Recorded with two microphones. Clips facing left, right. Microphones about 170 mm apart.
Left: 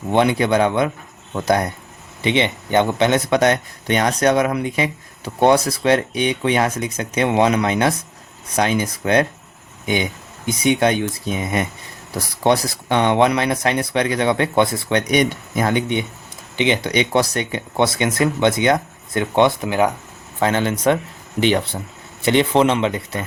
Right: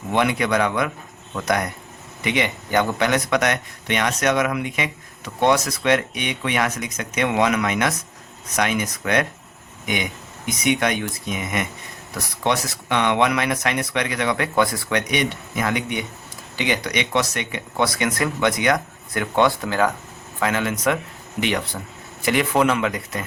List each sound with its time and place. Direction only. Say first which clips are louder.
0.1 s speech: left 4 dB; 30° left (ahead or behind)
15.1 s speech: left 5 dB; 40° left (ahead or behind); by 19.9 s 20° left (ahead or behind)
20.4 s speech: left 4 dB; 30° left (ahead or behind)